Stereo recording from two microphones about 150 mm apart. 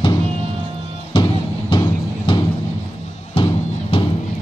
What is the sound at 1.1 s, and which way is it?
Music, 35° left (ahead or behind).